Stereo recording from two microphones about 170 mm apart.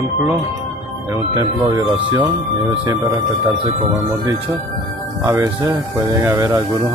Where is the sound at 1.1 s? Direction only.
20° right (ahead or behind).